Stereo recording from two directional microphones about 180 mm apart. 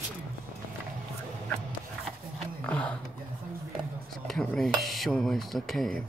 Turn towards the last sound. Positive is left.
turn(degrees=5)  # may be behind; listen again after turning